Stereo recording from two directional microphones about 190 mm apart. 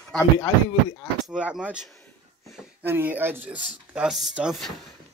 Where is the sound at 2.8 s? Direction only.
10° right (ahead or behind).